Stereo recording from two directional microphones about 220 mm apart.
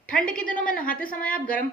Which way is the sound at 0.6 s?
40° left (ahead or behind).